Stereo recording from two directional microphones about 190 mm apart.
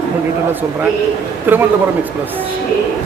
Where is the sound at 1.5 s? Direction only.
10° right (ahead or behind).